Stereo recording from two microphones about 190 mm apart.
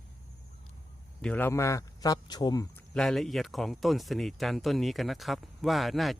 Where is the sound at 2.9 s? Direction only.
5° left (ahead or behind).